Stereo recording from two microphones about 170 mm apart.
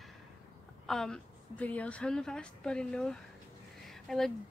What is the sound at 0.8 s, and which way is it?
A woman's voice, 5° left (ahead or behind).